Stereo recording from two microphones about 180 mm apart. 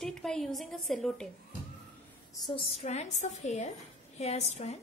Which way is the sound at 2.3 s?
25° left (ahead or behind).